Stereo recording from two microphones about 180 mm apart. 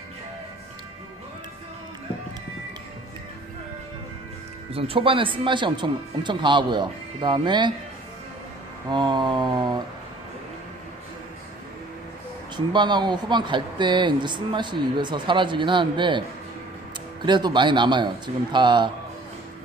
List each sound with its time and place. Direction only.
4.7 s speech: 30° right (ahead or behind)
8.9 s speech: 25° right (ahead or behind)
12.5 s speech: 25° right (ahead or behind)
17.2 s speech: 25° right (ahead or behind)